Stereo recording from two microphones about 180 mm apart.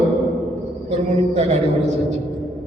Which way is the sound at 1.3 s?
35° right (ahead or behind).